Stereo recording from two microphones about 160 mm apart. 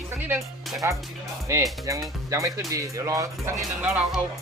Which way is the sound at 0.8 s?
15° right (ahead or behind).